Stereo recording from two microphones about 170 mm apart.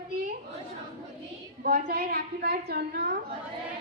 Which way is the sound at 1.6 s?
65° right (ahead or behind).